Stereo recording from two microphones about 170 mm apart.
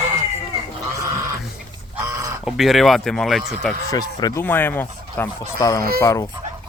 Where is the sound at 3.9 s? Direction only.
20° left (ahead or behind).